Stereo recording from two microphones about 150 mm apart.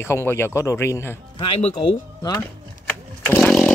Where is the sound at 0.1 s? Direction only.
15° left (ahead or behind).